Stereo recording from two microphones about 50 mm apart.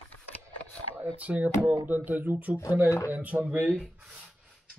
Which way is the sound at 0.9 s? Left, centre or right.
Right.